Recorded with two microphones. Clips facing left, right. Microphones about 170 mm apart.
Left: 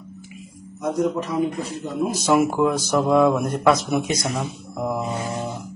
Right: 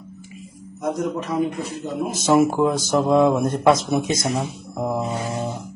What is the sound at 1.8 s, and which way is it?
Speech, 20° right (ahead or behind).